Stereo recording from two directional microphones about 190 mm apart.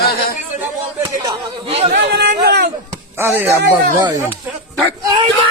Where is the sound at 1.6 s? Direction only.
35° right (ahead or behind).